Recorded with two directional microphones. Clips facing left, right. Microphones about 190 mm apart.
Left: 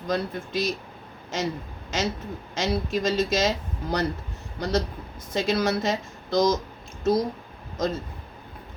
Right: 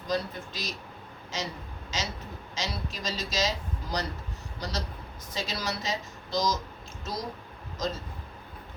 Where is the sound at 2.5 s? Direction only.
55° left (ahead or behind).